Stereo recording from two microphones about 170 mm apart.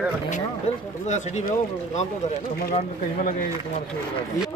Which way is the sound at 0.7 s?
40° left (ahead or behind).